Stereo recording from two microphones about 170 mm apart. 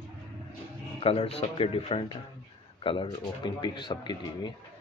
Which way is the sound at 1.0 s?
35° left (ahead or behind).